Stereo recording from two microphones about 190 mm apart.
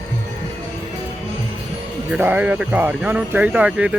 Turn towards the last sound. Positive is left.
turn(degrees=-5)  # may be behind; listen again after turning